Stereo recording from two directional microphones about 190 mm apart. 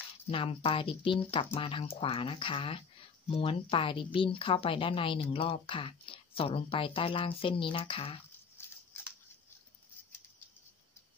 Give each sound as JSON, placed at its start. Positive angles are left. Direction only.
{"t": 0.3, "sound": "speech", "side_deg": 25}
{"t": 8.6, "sound": "scissors", "side_deg": 10}